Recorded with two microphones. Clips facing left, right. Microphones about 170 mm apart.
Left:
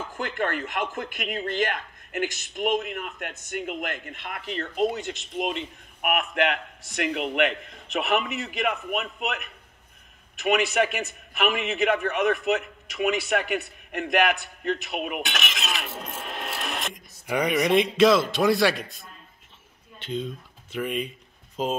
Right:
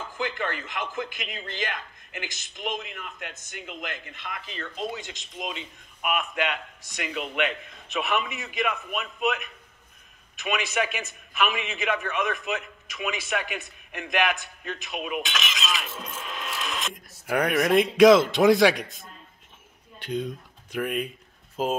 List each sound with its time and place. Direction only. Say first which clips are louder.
0.2 s a man's voice: left 2 dB; 55° left (ahead or behind)
16.9 s speech: right 3 dB; 5° right (ahead or behind)
18.0 s speech: right 5 dB; 20° right (ahead or behind)